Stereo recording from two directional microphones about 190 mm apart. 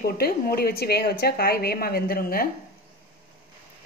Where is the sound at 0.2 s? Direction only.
55° left (ahead or behind).